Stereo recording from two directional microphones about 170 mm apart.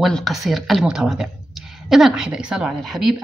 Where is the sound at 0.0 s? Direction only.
Centre (ahead or behind).